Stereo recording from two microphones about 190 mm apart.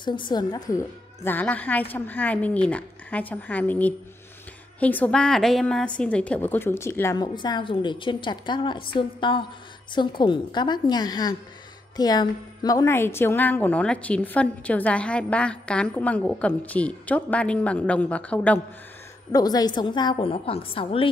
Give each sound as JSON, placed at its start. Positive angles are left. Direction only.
{"t": 0.0, "sound": "a woman's voice", "side_deg": 25}
{"t": 19.3, "sound": "a woman's voice", "side_deg": 20}